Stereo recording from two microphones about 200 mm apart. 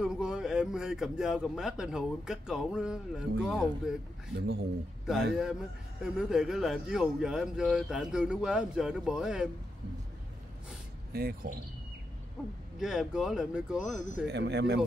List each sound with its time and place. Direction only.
0.0 s speech: 5° right (ahead or behind)
5.0 s speech: centre (ahead or behind)
11.1 s speech: 50° right (ahead or behind)
12.7 s speech: centre (ahead or behind)
14.2 s speech: 60° right (ahead or behind)